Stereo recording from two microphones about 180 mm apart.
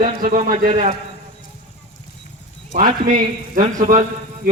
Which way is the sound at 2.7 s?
50° right (ahead or behind).